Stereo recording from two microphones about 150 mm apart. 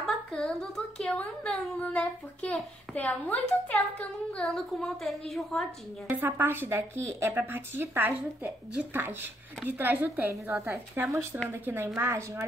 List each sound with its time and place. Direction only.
0.0 s speech: centre (ahead or behind)
6.0 s a woman's voice: 10° right (ahead or behind)